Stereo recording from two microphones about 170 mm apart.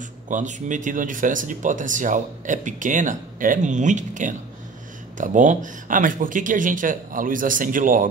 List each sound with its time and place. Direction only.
0.3 s speech: 45° right (ahead or behind)